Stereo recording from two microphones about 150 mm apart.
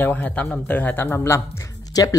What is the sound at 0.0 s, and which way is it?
A man's voice, 10° left (ahead or behind).